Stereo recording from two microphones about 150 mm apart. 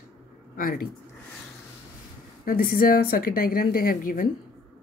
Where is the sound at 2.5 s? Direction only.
75° left (ahead or behind).